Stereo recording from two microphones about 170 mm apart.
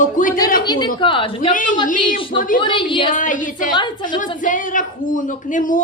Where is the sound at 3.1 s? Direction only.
50° left (ahead or behind).